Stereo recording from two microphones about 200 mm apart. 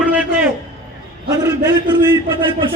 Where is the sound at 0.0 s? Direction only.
5° right (ahead or behind).